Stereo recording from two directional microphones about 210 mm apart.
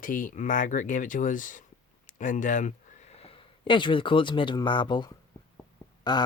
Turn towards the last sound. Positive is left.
turn(degrees=20)  # may be behind; listen again after turning